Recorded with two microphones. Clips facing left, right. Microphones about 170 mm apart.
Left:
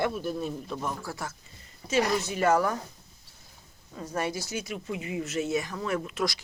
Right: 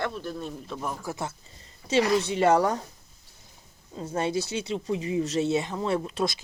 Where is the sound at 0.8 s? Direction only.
20° right (ahead or behind).